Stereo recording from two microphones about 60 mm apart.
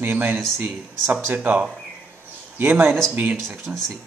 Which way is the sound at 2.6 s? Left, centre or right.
Right.